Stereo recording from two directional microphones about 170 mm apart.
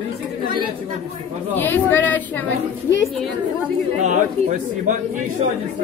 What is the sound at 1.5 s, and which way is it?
Speech, 10° left (ahead or behind).